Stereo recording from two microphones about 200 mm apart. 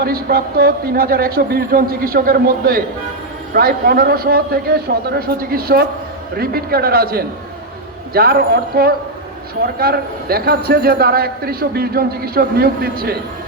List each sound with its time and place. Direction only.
0.0 s a man's voice: 50° right (ahead or behind)